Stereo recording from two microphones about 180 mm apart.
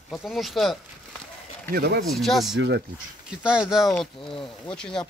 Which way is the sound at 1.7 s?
60° right (ahead or behind).